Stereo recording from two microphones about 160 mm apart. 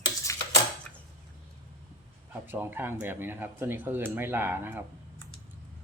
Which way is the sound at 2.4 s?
10° right (ahead or behind).